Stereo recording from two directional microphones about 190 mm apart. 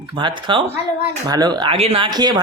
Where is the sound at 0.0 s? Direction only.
25° right (ahead or behind).